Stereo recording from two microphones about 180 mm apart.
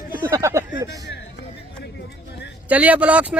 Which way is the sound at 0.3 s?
15° right (ahead or behind).